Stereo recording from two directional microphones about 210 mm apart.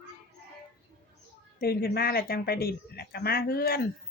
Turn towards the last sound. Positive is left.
turn(degrees=45)  # may be behind; listen again after turning